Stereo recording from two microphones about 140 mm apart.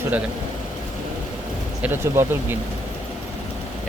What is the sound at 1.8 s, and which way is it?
Speech, 15° right (ahead or behind).